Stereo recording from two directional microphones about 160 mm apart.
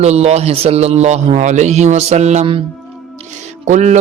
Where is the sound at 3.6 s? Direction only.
45° right (ahead or behind).